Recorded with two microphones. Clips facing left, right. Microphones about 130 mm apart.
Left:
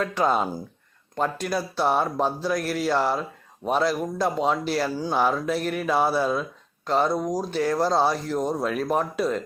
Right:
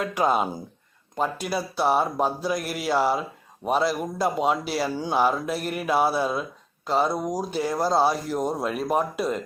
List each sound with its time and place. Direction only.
0.0 s speech: 10° right (ahead or behind)